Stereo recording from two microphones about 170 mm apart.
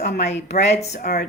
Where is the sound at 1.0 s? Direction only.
60° left (ahead or behind).